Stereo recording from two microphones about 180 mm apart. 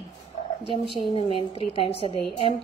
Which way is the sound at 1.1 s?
30° left (ahead or behind).